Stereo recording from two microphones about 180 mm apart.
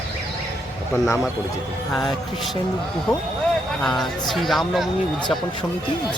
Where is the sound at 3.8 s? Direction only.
Centre (ahead or behind).